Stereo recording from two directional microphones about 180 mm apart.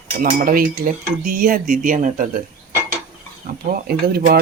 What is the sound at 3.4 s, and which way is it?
Speech, 55° right (ahead or behind).